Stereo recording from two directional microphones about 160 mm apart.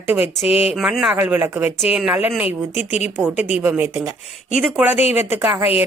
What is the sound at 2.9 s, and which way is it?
Speech, 45° left (ahead or behind).